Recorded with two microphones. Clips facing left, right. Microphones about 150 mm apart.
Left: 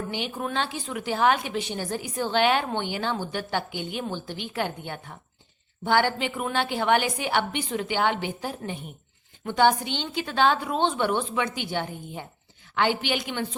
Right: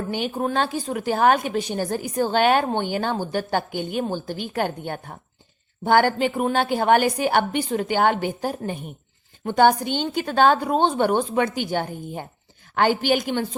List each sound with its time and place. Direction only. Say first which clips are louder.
0.1 s a woman's voice: right 6 dB; 40° right (ahead or behind)